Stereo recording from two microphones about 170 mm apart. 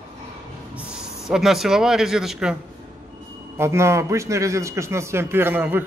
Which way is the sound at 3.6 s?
15° right (ahead or behind).